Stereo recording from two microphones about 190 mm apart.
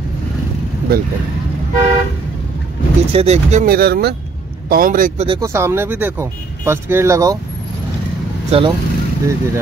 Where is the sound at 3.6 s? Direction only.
55° right (ahead or behind).